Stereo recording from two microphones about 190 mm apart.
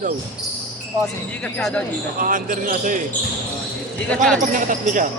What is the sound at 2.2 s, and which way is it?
Speech, 45° right (ahead or behind).